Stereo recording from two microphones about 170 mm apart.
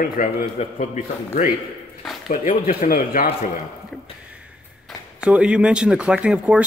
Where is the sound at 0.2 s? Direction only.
55° left (ahead or behind).